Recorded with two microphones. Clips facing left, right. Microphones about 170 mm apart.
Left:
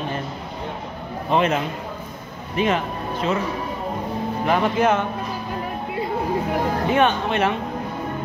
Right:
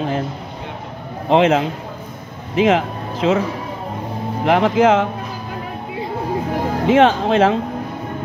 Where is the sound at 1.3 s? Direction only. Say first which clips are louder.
Right 6 dB; 90° right.